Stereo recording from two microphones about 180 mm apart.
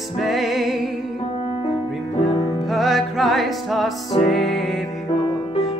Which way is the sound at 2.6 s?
Centre (ahead or behind).